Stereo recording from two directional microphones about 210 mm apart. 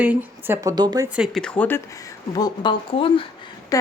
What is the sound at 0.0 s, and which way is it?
A woman's voice, 10° right (ahead or behind).